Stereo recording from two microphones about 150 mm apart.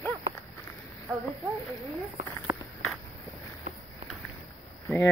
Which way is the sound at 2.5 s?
15° right (ahead or behind).